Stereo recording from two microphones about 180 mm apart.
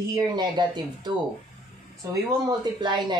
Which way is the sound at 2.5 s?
25° right (ahead or behind).